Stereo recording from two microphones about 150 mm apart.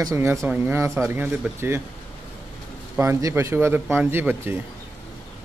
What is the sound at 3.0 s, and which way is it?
Speech, 20° right (ahead or behind).